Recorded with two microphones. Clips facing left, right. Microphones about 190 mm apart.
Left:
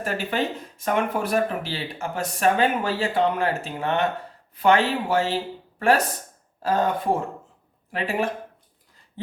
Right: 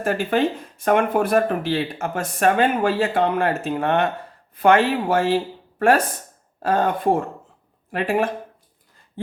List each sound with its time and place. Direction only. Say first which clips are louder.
0.0 s speech: right 6 dB; 55° right (ahead or behind)
6.6 s speech: right 2 dB; 55° right (ahead or behind)